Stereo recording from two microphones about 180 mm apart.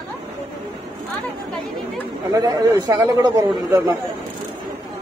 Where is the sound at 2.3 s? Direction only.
20° right (ahead or behind).